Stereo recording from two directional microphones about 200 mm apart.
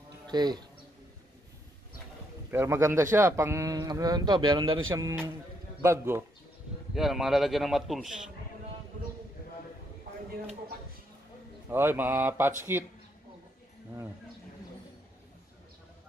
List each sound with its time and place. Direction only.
0.3 s speech: 20° right (ahead or behind)
2.5 s speech: 15° right (ahead or behind)
6.9 s a man's voice: centre (ahead or behind)
11.7 s speech: 10° right (ahead or behind)